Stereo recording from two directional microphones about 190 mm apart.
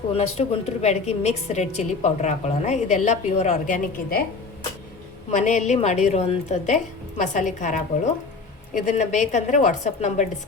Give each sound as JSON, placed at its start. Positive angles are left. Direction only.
{"t": 0.1, "sound": "a woman's voice", "side_deg": 35}
{"t": 5.3, "sound": "a woman's voice", "side_deg": 40}